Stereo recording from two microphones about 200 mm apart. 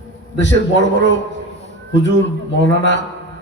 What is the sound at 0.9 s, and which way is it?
A man's voice, 65° left (ahead or behind).